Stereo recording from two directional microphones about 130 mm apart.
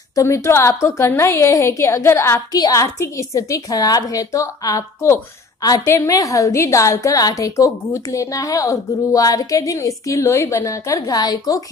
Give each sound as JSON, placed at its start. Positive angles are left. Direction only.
{"t": 0.1, "sound": "a woman's voice", "side_deg": 25}